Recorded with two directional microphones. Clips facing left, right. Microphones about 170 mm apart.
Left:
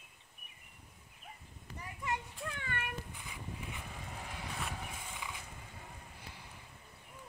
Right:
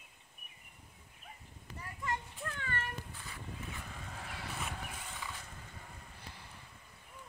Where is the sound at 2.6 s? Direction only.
15° left (ahead or behind).